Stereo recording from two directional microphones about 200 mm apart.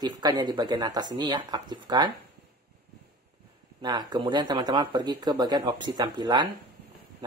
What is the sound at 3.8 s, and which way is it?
Speech, 20° right (ahead or behind).